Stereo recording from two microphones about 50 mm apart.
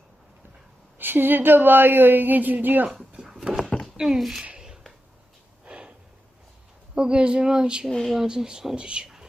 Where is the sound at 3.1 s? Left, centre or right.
Centre.